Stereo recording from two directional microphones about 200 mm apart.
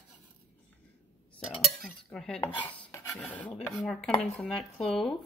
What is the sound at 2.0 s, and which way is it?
A woman's voice, 5° left (ahead or behind).